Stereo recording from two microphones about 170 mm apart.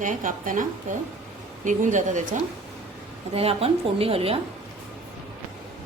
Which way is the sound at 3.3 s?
35° right (ahead or behind).